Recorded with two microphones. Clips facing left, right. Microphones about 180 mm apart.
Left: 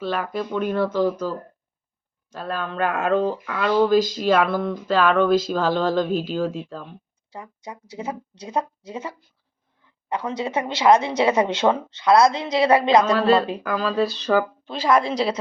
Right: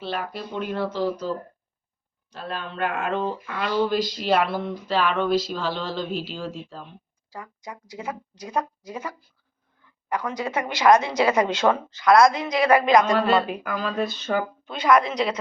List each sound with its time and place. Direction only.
0.0 s speech: 45° left (ahead or behind)
2.3 s speech: 45° left (ahead or behind)
7.3 s a woman's voice: 25° left (ahead or behind)